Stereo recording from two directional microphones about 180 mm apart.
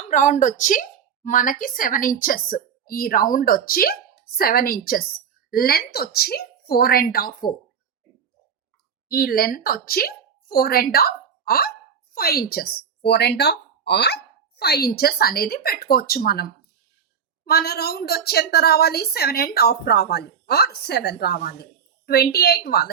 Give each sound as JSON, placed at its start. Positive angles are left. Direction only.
{"t": 0.0, "sound": "a woman's voice", "side_deg": 45}
{"t": 9.0, "sound": "a woman's voice", "side_deg": 55}